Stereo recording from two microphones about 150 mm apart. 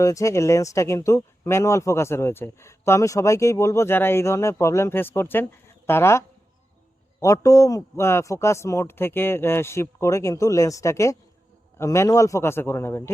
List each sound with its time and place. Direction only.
0.0 s speech: 20° left (ahead or behind)